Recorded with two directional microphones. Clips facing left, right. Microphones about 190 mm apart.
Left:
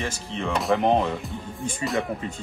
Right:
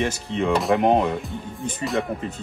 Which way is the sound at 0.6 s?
5° right (ahead or behind).